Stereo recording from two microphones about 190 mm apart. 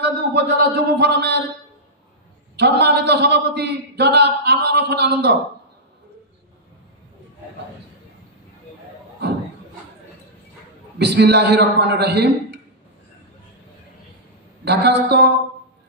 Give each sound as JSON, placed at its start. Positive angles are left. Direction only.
{"t": 0.0, "sound": "a man's voice", "side_deg": -60}
{"t": 2.5, "sound": "a sound", "side_deg": -60}
{"t": 11.0, "sound": "a man's voice", "side_deg": -60}
{"t": 14.6, "sound": "a man's voice", "side_deg": -60}